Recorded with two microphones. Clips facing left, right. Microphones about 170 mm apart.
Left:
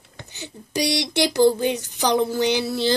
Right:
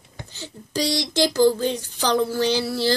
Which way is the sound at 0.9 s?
65° left (ahead or behind).